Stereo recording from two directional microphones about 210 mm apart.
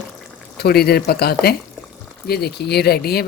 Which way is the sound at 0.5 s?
50° left (ahead or behind).